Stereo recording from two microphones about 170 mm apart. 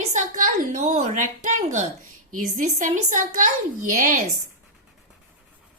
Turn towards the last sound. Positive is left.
turn(degrees=-50)  # may be behind; listen again after turning